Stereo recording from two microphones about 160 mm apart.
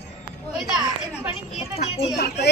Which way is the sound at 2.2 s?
90° left.